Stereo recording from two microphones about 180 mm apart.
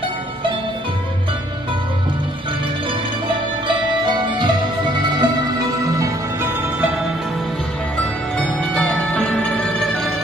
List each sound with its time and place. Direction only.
3.6 s music: 25° right (ahead or behind)
8.7 s music: 10° left (ahead or behind)